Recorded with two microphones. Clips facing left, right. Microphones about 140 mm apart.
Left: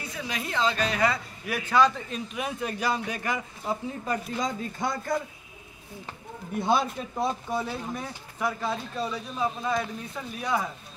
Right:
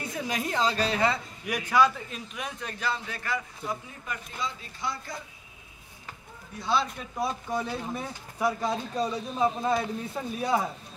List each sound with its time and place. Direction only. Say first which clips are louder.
0.0 s speech: right 3 dB; 45° right (ahead or behind); by 3.4 s 15° left (ahead or behind)
3.6 s speech: left 5 dB; 35° left (ahead or behind)
4.4 s speech: left 6 dB; 45° left (ahead or behind)
6.5 s speech: left 3 dB; 50° left (ahead or behind)
7.8 s speech: even; 5° right (ahead or behind); by 10.7 s 30° right (ahead or behind)